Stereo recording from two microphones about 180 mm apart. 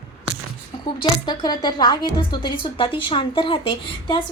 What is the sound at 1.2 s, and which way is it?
A woman's voice, 25° left (ahead or behind).